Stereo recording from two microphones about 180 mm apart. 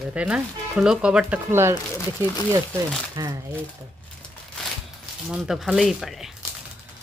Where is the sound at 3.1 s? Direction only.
20° right (ahead or behind).